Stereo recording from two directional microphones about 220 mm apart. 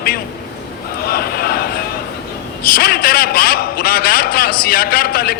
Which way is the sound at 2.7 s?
45° left (ahead or behind).